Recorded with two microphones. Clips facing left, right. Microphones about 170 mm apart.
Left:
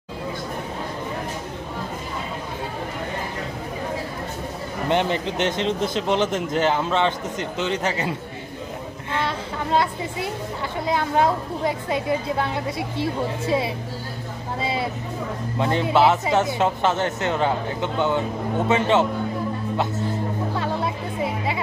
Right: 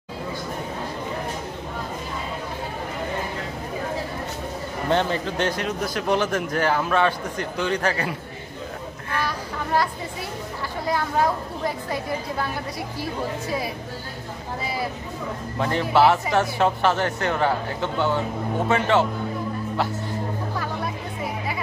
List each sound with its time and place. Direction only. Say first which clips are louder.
4.8 s speech: left 1 dB; 20° left (ahead or behind)
9.1 s children playing: left 2 dB; 20° left (ahead or behind)
10.9 s speech: left 2 dB; 20° left (ahead or behind)
20.5 s music: left 5 dB; 25° left (ahead or behind)